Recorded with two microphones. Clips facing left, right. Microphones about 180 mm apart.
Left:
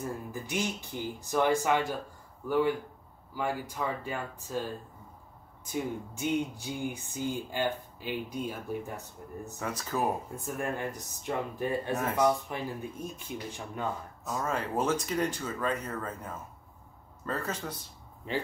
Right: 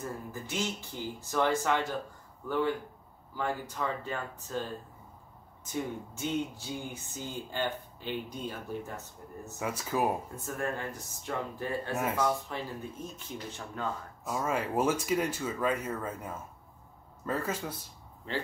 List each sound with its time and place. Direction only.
0.3 s speech: 15° left (ahead or behind)
6.1 s speech: 15° left (ahead or behind)
9.6 s speech: 10° right (ahead or behind)
10.3 s speech: 15° left (ahead or behind)
14.2 s speech: 10° right (ahead or behind)